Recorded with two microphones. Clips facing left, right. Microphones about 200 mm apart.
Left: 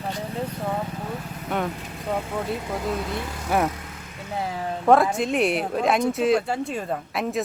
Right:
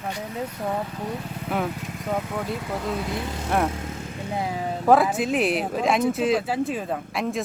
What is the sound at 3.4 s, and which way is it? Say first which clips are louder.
Speech: left 1 dB; 5° left (ahead or behind).